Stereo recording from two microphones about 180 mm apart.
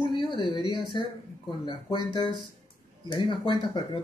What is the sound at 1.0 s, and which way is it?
Speech, 25° left (ahead or behind).